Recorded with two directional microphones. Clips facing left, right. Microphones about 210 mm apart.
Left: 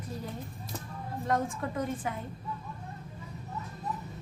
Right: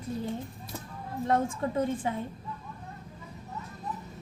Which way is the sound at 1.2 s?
25° right (ahead or behind).